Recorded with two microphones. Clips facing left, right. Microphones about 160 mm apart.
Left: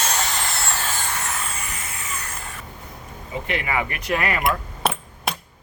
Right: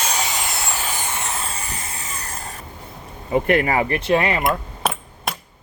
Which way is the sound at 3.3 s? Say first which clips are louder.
Right 8 dB; 50° right (ahead or behind).